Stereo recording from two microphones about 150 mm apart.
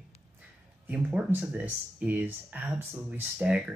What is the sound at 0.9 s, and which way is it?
Speech, 10° right (ahead or behind).